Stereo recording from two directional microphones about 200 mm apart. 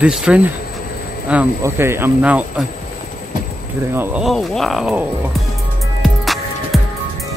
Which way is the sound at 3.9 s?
10° right (ahead or behind).